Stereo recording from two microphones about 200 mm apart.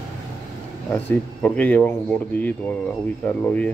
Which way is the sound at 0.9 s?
10° left (ahead or behind).